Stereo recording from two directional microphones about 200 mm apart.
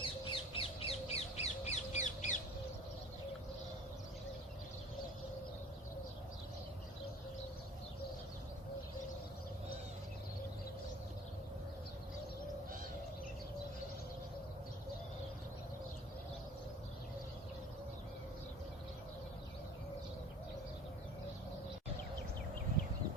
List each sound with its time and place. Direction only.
0.0 s bird: 25° left (ahead or behind)